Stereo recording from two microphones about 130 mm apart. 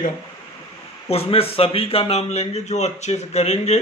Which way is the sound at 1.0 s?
50° left (ahead or behind).